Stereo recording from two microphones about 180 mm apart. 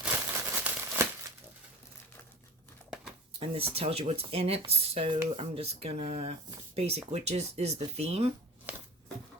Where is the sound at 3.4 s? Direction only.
30° right (ahead or behind).